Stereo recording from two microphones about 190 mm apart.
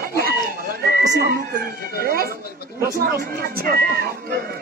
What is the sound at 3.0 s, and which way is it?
Speech, 50° right (ahead or behind).